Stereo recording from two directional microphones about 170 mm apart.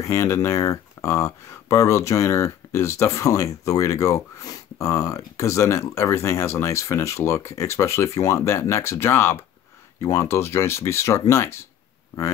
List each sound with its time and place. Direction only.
0.0 s speech: 15° left (ahead or behind)